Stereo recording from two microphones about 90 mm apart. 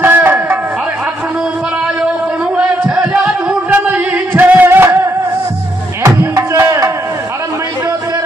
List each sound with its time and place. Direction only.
0.0 s a sound: 25° right (ahead or behind)
2.5 s music: 15° right (ahead or behind)
6.0 s music: 35° right (ahead or behind)